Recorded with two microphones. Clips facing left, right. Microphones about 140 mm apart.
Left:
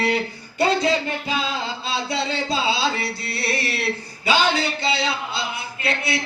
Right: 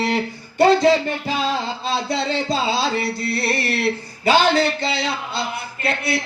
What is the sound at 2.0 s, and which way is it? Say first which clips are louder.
Music: right 2 dB; 50° right (ahead or behind).